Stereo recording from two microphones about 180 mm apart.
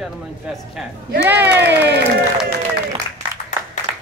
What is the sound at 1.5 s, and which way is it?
Crowd, 65° right (ahead or behind).